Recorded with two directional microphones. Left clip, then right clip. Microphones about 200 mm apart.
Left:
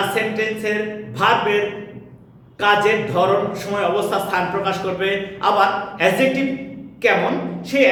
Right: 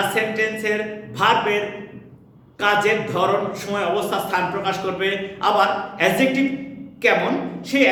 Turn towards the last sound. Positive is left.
turn(degrees=-15)  # may be behind; listen again after turning